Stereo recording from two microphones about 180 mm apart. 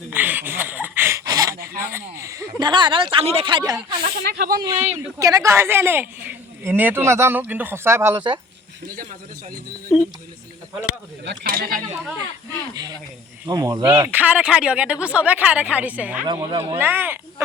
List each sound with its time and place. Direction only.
0.1 s a sound: 10° right (ahead or behind)
1.8 s speech: 15° right (ahead or behind)
3.8 s snake: 25° right (ahead or behind)
4.3 s speech: 55° right (ahead or behind)
5.2 s speech: 20° right (ahead or behind)
9.9 s speech: centre (ahead or behind)
11.3 s speech: 55° right (ahead or behind)
13.5 s speech: 20° right (ahead or behind)
14.1 s speech: 10° right (ahead or behind)
16.2 s speech: 25° right (ahead or behind)
16.7 s speech: 10° right (ahead or behind)